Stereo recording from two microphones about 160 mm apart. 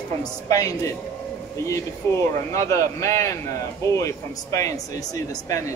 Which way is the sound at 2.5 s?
20° left (ahead or behind).